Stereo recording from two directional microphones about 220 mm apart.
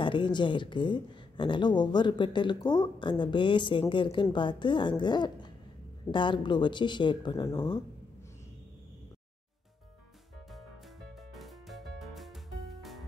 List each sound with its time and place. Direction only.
0.0 s speech: 20° left (ahead or behind)
11.3 s music: centre (ahead or behind)